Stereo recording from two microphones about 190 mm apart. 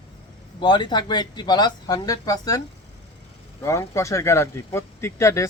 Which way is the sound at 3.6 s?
15° left (ahead or behind).